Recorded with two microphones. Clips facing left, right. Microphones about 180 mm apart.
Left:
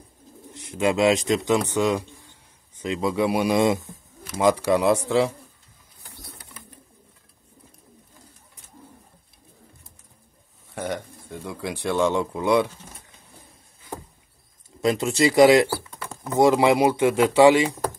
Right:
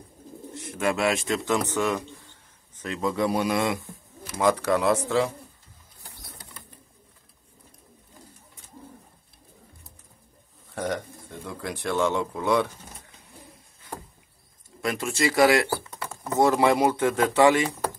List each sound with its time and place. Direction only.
0.6 s a man's voice: 15° left (ahead or behind)
10.7 s pigeon: 10° left (ahead or behind)
14.8 s a man's voice: 20° left (ahead or behind)